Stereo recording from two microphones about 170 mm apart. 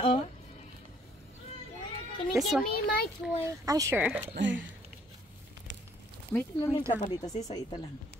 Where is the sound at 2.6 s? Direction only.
65° left (ahead or behind).